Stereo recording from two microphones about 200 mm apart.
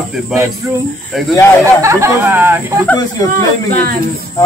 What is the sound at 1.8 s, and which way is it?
Speech, 15° right (ahead or behind).